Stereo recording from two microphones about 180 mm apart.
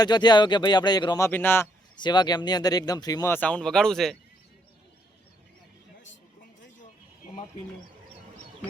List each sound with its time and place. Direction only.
0.0 s a man's voice: 25° left (ahead or behind)
2.0 s speech: 25° left (ahead or behind); by 4.2 s 5° left (ahead or behind)